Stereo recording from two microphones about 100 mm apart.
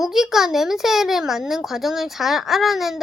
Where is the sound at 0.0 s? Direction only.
5° right (ahead or behind).